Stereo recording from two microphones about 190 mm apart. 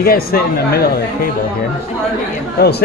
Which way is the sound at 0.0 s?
55° left (ahead or behind).